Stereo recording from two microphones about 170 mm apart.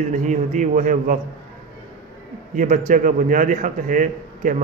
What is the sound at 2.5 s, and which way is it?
A man's voice, 50° right (ahead or behind).